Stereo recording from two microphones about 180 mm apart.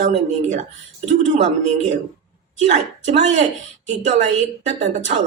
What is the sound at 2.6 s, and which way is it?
Speech, 40° right (ahead or behind).